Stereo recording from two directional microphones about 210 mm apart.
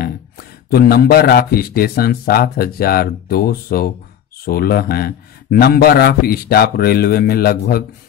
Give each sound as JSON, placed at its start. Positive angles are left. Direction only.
{"t": 0.0, "sound": "speech", "side_deg": 45}